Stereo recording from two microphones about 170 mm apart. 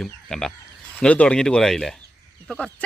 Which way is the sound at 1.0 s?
5° left (ahead or behind).